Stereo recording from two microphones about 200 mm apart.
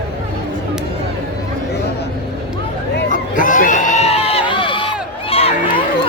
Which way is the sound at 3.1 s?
40° left (ahead or behind).